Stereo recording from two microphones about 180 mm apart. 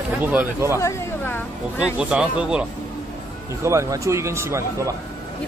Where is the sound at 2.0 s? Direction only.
5° right (ahead or behind).